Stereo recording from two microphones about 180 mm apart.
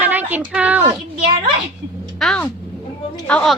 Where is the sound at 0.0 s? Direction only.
10° right (ahead or behind).